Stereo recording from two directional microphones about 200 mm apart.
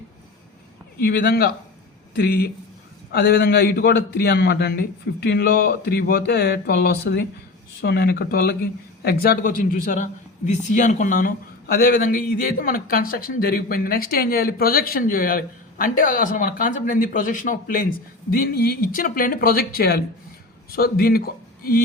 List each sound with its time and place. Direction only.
0.9 s a man's voice: 50° left (ahead or behind)